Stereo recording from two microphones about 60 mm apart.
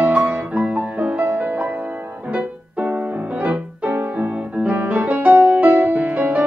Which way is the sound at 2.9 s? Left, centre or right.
Right.